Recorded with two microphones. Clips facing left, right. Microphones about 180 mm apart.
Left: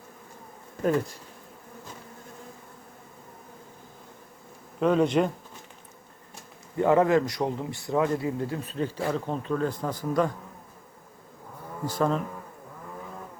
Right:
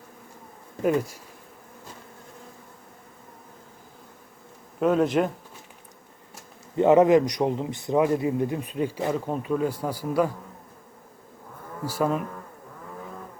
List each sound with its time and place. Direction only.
0.8 s a man's voice: 10° right (ahead or behind)
4.8 s speech: 5° right (ahead or behind)
6.7 s a man's voice: 20° right (ahead or behind)
11.9 s a man's voice: 10° right (ahead or behind)